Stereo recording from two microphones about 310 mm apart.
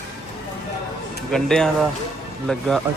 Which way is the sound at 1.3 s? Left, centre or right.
Centre.